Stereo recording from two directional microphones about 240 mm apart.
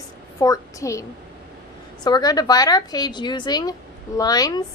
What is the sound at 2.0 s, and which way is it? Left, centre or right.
Speech, centre.